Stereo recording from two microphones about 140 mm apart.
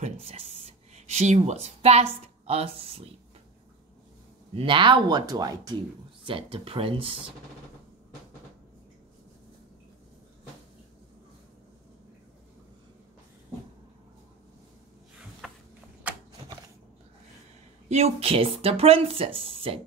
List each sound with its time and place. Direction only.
0.0 s speech: 50° right (ahead or behind)
4.6 s speech: 35° right (ahead or behind)
6.2 s speech: 40° right (ahead or behind)
15.4 s a sound: centre (ahead or behind)
17.8 s speech: 50° right (ahead or behind)